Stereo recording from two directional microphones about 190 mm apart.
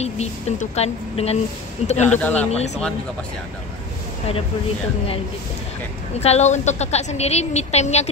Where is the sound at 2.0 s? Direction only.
10° left (ahead or behind).